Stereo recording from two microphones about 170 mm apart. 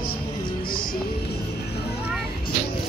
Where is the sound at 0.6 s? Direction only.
60° left (ahead or behind).